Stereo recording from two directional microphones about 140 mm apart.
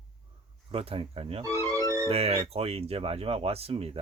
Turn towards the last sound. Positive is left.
turn(degrees=-45)  # may be behind; listen again after turning